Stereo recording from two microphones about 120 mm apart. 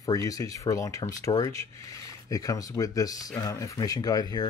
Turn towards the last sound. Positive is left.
turn(degrees=30)  # may be behind; listen again after turning